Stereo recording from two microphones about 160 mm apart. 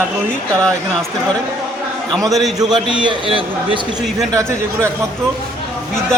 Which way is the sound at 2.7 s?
30° right (ahead or behind).